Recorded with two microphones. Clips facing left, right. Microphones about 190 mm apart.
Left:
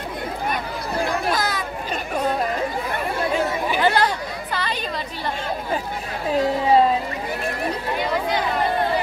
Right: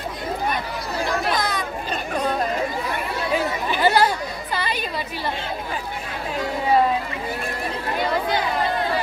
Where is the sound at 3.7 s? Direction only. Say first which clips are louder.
Right 2 dB; 10° right (ahead or behind).